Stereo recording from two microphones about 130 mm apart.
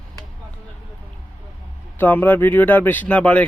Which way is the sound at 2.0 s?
15° left (ahead or behind).